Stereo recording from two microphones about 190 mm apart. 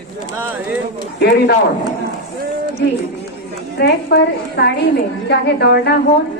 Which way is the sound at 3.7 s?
60° left (ahead or behind).